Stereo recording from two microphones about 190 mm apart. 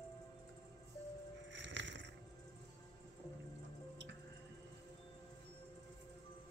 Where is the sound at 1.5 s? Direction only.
70° right (ahead or behind).